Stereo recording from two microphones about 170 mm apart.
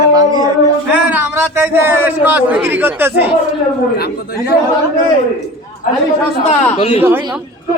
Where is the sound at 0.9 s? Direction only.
10° right (ahead or behind).